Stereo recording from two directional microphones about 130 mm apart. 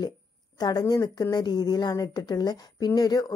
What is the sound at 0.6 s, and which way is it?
A woman's voice, 30° left (ahead or behind).